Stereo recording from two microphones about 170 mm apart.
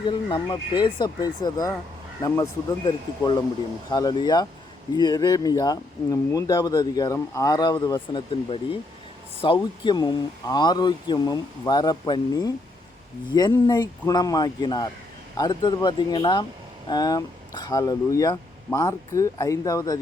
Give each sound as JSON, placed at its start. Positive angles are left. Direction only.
{"t": 0.1, "sound": "speech", "side_deg": 25}
{"t": 2.8, "sound": "speech", "side_deg": 30}